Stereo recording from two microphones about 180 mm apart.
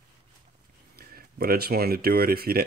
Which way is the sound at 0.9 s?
55° right (ahead or behind).